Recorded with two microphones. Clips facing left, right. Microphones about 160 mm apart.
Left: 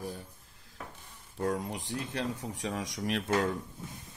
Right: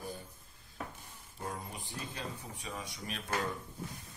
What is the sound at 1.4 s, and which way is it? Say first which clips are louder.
Speech: left 10 dB; 80° left.